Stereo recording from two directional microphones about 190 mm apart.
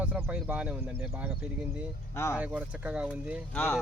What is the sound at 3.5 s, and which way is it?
Speech, 10° left (ahead or behind).